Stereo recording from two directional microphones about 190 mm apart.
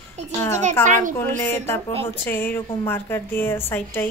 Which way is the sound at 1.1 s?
10° left (ahead or behind).